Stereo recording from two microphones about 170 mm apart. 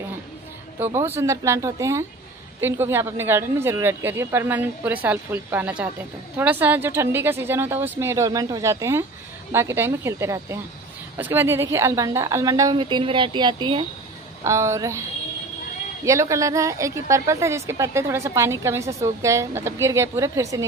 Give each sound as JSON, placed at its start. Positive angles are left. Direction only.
{"t": 0.7, "sound": "a woman's voice", "side_deg": -10}
{"t": 14.4, "sound": "a woman's voice", "side_deg": -15}
{"t": 16.1, "sound": "a woman's voice", "side_deg": -20}